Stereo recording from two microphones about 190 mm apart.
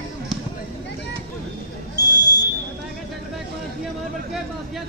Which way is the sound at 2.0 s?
20° left (ahead or behind).